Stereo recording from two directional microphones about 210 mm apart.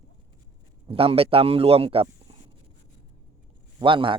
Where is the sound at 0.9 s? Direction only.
25° right (ahead or behind).